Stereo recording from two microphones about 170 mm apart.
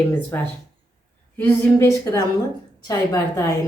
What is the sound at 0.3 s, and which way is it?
Speech, 15° left (ahead or behind).